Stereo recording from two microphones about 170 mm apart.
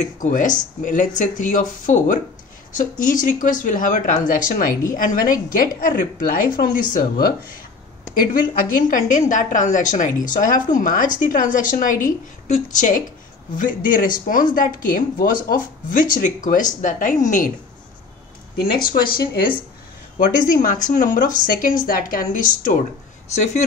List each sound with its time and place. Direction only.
0.0 s a woman's voice: 50° left (ahead or behind)
8.3 s a woman's voice: 50° left (ahead or behind)
19.0 s a woman's voice: 60° left (ahead or behind)